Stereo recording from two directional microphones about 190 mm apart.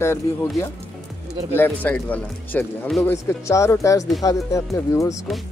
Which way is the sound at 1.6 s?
10° left (ahead or behind).